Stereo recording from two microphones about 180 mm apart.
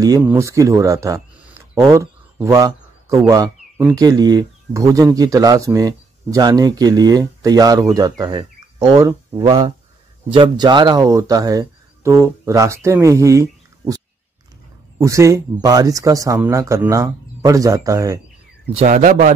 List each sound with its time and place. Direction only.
0.0 s speech: 15° right (ahead or behind)
18.8 s speech: 45° right (ahead or behind)